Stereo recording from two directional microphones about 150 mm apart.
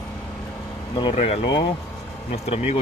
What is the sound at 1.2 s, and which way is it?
Speech, 45° left (ahead or behind).